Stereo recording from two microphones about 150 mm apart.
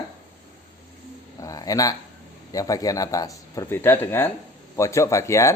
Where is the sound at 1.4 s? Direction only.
25° left (ahead or behind).